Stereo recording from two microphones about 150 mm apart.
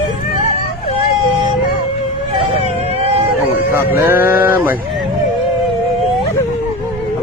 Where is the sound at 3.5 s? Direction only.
15° right (ahead or behind).